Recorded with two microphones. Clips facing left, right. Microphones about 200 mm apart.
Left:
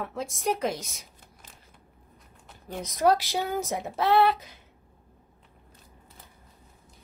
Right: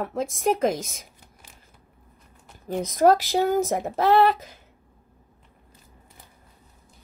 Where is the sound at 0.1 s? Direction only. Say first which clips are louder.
Right 6 dB; 50° right (ahead or behind).